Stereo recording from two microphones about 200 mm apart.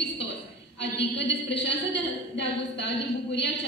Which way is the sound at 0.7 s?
60° left (ahead or behind).